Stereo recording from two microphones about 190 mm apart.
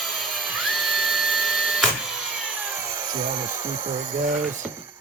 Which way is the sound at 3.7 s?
35° right (ahead or behind).